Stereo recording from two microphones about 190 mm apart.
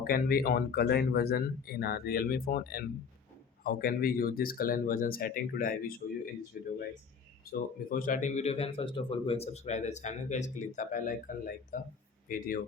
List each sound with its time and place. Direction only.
0.0 s speech: 50° left (ahead or behind)
7.9 s speech: 45° left (ahead or behind)